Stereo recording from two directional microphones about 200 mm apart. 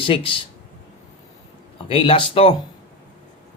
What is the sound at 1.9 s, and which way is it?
Speech, 25° left (ahead or behind).